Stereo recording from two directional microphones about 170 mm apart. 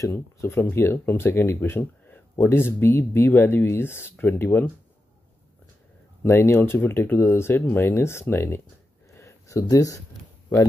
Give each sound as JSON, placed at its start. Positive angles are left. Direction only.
{"t": 0.0, "sound": "speech", "side_deg": 15}
{"t": 6.2, "sound": "speech", "side_deg": 15}
{"t": 9.1, "sound": "a sound", "side_deg": 20}